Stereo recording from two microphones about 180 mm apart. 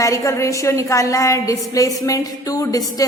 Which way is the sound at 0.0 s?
20° left (ahead or behind).